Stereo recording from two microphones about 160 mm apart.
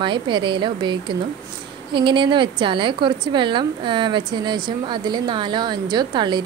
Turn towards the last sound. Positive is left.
turn(degrees=-30)  # may be behind; listen again after turning